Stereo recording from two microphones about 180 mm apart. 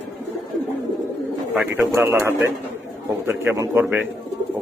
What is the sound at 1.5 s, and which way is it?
A man's voice, 5° right (ahead or behind).